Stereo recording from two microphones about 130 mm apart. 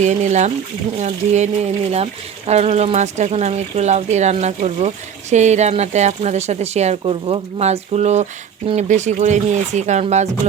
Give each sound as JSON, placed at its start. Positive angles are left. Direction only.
{"t": 0.0, "sound": "a woman's voice", "side_deg": -65}